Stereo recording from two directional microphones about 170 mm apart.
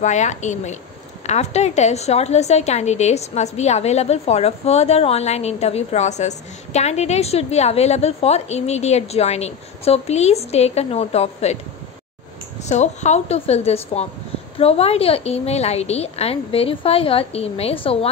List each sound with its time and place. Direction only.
0.0 s a woman's voice: 45° left (ahead or behind)
12.6 s a woman's voice: 40° left (ahead or behind)